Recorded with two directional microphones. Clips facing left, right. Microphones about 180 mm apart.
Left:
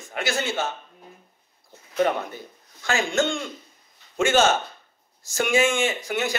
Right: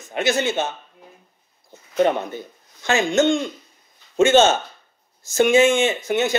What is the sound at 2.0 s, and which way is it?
A man's voice, 25° right (ahead or behind).